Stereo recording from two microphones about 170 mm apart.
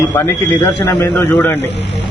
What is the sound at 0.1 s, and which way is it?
A man's voice, 10° left (ahead or behind).